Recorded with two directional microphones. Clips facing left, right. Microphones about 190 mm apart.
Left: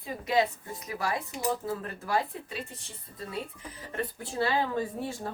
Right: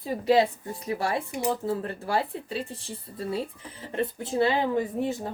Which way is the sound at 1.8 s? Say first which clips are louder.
Right 3 dB; 30° right (ahead or behind).